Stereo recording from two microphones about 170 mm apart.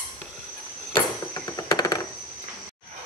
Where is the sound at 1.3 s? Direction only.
20° left (ahead or behind).